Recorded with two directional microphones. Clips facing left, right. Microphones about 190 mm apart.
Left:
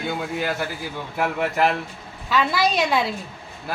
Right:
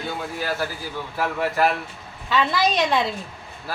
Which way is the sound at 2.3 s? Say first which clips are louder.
Even; 5° left (ahead or behind).